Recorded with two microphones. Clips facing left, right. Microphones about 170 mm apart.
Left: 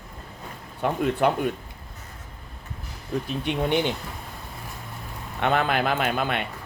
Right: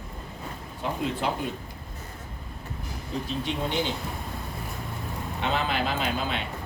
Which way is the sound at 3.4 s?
60° left (ahead or behind).